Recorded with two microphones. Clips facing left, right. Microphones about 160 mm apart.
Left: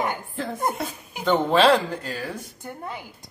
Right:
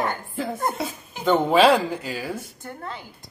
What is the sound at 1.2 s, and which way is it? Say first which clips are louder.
Speech: right 1 dB; 5° right (ahead or behind).